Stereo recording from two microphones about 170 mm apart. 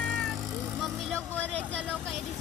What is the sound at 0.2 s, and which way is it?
Vehicle, centre (ahead or behind).